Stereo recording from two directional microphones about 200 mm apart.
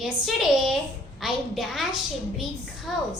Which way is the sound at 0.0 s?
Centre (ahead or behind).